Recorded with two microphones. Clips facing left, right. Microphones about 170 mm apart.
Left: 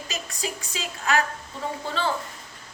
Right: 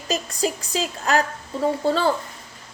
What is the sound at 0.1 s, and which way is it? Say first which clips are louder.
A woman's voice: right 10 dB; 40° right (ahead or behind).